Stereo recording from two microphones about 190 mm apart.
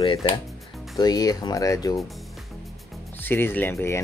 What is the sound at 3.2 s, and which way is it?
Speech, 10° left (ahead or behind).